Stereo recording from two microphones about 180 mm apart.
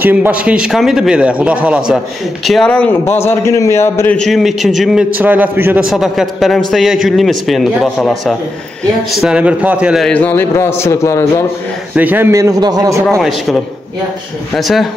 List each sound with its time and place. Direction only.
0.0 s a man's voice: 10° right (ahead or behind); by 4.2 s 15° left (ahead or behind)
4.2 s a man's voice: centre (ahead or behind); by 11.2 s 15° left (ahead or behind)
11.9 s a man's voice: 10° right (ahead or behind)
14.5 s a man's voice: centre (ahead or behind)